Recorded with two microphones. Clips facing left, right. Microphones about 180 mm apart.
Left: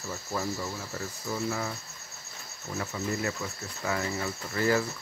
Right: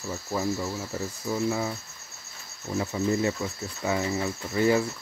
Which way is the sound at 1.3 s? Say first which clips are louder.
Right 5 dB; 15° right (ahead or behind).